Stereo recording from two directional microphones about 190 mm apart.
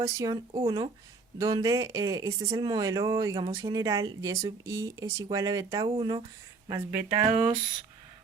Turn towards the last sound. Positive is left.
turn(degrees=-15)  # may be behind; listen again after turning